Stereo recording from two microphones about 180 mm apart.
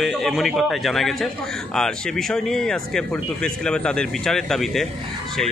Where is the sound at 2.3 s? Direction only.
5° left (ahead or behind).